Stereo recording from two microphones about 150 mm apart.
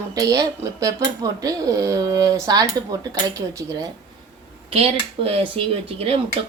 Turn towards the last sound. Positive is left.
turn(degrees=-40)  # may be behind; listen again after turning